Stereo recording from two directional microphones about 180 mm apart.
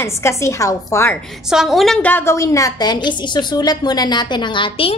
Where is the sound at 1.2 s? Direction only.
Centre (ahead or behind); by 4.9 s 30° left (ahead or behind).